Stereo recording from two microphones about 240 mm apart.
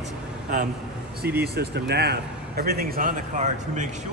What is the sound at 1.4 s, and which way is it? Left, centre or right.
Speech, right.